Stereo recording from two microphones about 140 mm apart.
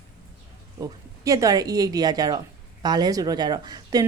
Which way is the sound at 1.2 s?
25° right (ahead or behind).